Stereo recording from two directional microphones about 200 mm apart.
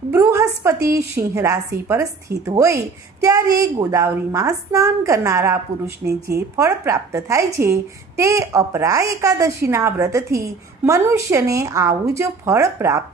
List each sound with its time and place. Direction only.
0.1 s a woman's voice: 15° right (ahead or behind)